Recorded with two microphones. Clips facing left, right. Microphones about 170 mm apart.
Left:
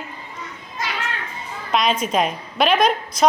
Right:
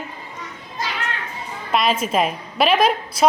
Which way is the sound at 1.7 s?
5° right (ahead or behind).